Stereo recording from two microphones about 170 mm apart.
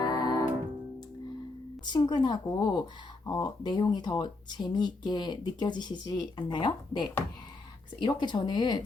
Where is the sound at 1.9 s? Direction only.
25° left (ahead or behind).